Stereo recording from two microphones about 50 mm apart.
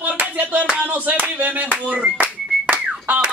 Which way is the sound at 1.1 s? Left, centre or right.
Right.